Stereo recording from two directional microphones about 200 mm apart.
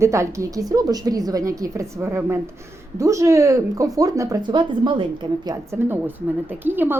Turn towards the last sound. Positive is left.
turn(degrees=-10)  # may be behind; listen again after turning